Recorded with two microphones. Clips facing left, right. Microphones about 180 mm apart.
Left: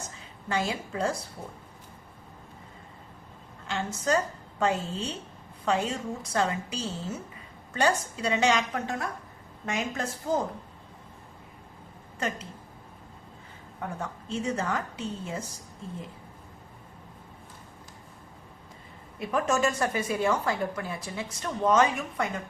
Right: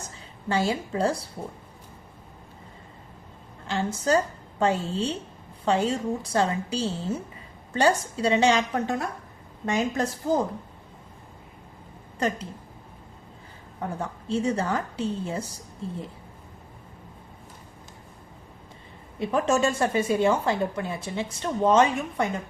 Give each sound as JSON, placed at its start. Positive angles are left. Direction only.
{"t": 0.4, "sound": "a woman's voice", "side_deg": -30}
{"t": 3.7, "sound": "a woman's voice", "side_deg": -35}
{"t": 13.8, "sound": "a woman's voice", "side_deg": -30}
{"t": 19.2, "sound": "a woman's voice", "side_deg": -30}